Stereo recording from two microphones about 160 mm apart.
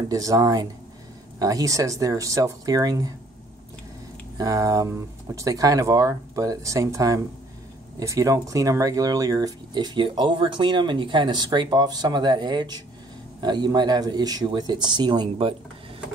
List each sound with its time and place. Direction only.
0.1 s speech: 20° right (ahead or behind)
4.4 s speech: 20° right (ahead or behind)